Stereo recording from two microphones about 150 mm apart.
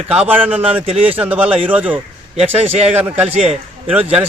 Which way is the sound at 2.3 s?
45° right (ahead or behind).